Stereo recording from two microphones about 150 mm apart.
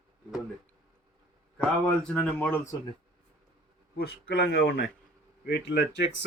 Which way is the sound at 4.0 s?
90° left.